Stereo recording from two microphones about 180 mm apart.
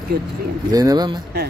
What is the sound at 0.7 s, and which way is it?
Speech, 20° right (ahead or behind).